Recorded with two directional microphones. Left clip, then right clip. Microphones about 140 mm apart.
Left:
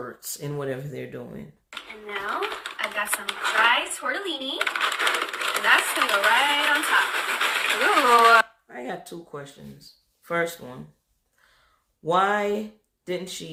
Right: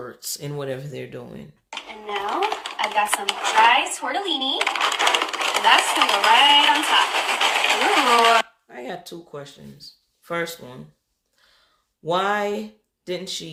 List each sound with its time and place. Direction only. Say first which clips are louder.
0.0 s speech: right 2 dB; 30° right (ahead or behind)
1.7 s speech: right 5 dB; centre (ahead or behind)
8.6 s speech: right 1 dB; 25° right (ahead or behind)
12.0 s speech: even; 25° right (ahead or behind)